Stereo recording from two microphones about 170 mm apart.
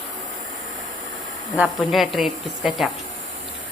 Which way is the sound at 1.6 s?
Centre (ahead or behind).